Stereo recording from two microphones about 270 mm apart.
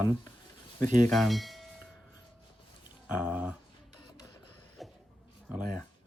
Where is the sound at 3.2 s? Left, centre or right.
Centre.